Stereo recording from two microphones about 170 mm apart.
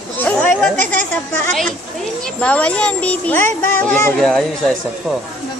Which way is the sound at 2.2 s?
5° left (ahead or behind).